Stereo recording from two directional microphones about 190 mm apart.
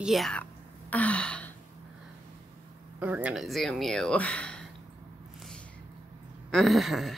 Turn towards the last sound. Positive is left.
turn(degrees=0)  # may be behind; listen again after turning